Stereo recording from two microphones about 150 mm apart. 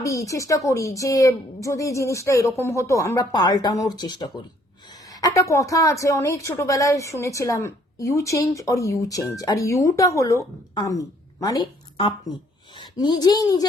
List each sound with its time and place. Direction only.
0.0 s speech: 20° left (ahead or behind)